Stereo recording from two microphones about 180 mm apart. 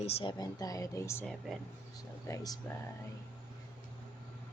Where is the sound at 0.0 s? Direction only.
35° left (ahead or behind).